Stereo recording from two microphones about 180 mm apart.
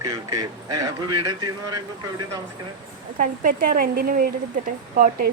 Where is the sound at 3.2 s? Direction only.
50° right (ahead or behind).